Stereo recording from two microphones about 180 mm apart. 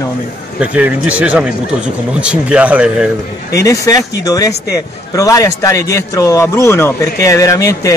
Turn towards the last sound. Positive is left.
turn(degrees=20)  # may be behind; listen again after turning